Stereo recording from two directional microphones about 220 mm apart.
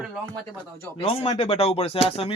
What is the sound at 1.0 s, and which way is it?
A man's voice, 25° left (ahead or behind).